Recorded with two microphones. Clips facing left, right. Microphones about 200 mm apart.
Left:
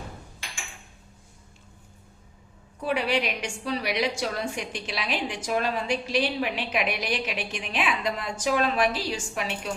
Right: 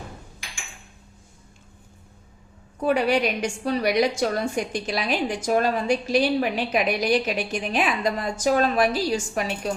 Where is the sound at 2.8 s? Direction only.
45° right (ahead or behind).